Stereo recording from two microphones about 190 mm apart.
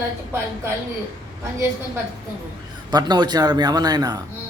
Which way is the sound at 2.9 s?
20° right (ahead or behind).